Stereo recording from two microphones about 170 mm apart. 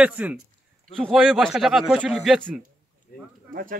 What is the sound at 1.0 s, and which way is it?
Speech, centre (ahead or behind).